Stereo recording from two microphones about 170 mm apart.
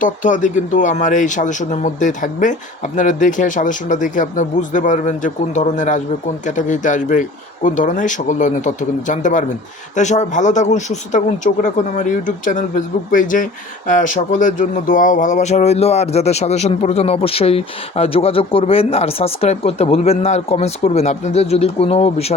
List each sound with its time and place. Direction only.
0.0 s speech: 50° left (ahead or behind)